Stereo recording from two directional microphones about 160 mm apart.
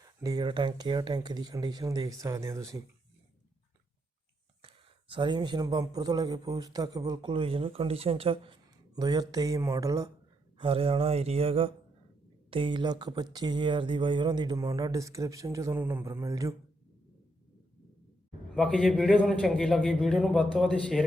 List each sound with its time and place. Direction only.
0.0 s speech: 20° right (ahead or behind)
4.6 s speech: 30° right (ahead or behind)
9.0 s speech: 25° right (ahead or behind)
10.6 s mantra: 35° right (ahead or behind)
12.5 s speech: 30° right (ahead or behind)
18.5 s a man's voice: 5° left (ahead or behind)